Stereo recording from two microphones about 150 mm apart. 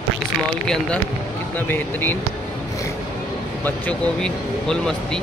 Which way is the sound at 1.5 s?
15° left (ahead or behind).